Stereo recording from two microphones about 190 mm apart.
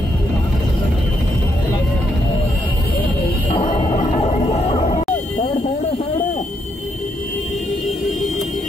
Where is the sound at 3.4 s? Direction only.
30° left (ahead or behind).